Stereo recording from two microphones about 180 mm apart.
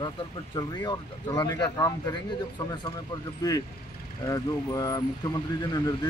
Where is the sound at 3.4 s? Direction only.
20° left (ahead or behind).